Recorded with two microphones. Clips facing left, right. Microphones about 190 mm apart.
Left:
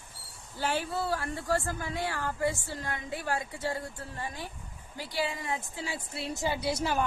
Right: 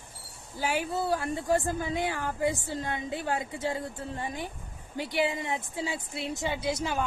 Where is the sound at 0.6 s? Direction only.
10° right (ahead or behind).